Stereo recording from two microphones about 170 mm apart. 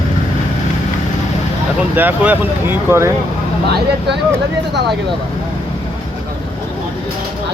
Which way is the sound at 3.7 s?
75° right (ahead or behind).